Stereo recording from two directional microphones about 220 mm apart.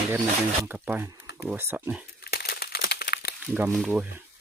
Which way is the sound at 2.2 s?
45° left (ahead or behind).